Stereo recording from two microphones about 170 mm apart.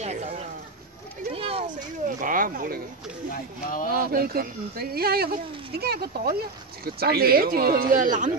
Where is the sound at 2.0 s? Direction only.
55° right (ahead or behind).